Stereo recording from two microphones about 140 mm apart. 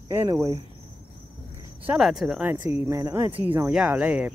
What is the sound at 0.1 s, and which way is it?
Speech, 20° right (ahead or behind).